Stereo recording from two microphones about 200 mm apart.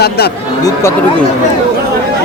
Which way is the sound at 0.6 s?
15° left (ahead or behind).